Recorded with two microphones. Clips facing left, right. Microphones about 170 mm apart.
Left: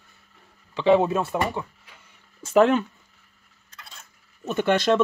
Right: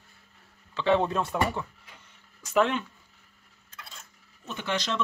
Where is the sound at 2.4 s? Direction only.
40° left (ahead or behind).